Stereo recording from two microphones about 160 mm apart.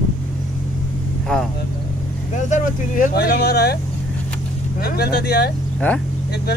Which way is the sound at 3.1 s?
90° left.